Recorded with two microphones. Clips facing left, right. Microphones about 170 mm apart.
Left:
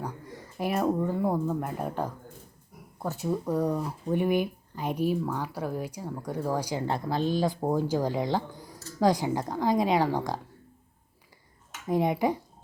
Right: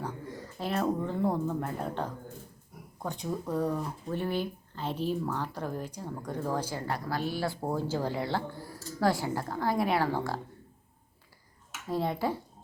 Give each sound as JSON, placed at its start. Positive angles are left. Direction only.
{"t": 0.0, "sound": "speech", "side_deg": 10}
{"t": 11.9, "sound": "speech", "side_deg": 15}